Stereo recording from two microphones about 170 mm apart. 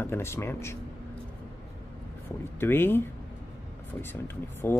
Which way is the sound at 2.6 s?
10° left (ahead or behind).